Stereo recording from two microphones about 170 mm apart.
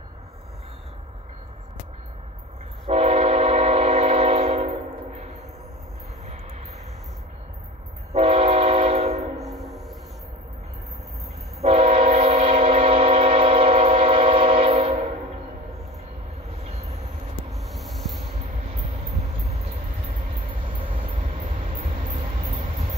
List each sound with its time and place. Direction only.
2.9 s train: 40° right (ahead or behind)
8.1 s train: 40° right (ahead or behind)
9.4 s train: centre (ahead or behind)
11.6 s train: 40° right (ahead or behind)
16.6 s train: 40° right (ahead or behind)
17.5 s a sound: centre (ahead or behind)
19.4 s vehicle: 40° right (ahead or behind)
20.4 s train: 30° right (ahead or behind)
21.2 s vehicle: 45° right (ahead or behind)
22.1 s train: 35° right (ahead or behind)